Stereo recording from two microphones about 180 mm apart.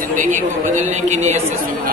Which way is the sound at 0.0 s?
45° right (ahead or behind).